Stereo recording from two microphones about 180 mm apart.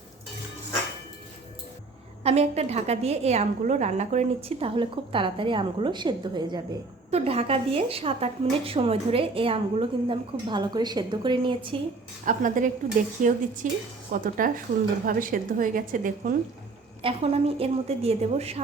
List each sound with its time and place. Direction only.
2.2 s speech: 35° right (ahead or behind)
12.2 s a woman's voice: 45° right (ahead or behind)
17.0 s speech: 30° right (ahead or behind)